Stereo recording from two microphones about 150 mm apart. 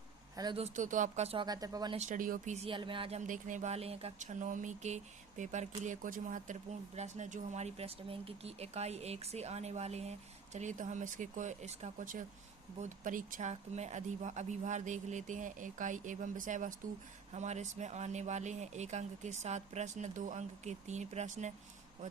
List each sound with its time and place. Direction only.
0.5 s speech: 50° right (ahead or behind)
1.5 s speech: 25° right (ahead or behind)
2.0 s speech: 60° right (ahead or behind)
2.6 s speech: 35° right (ahead or behind)
3.2 s speech: 60° right (ahead or behind)
17.3 s speech: 50° right (ahead or behind)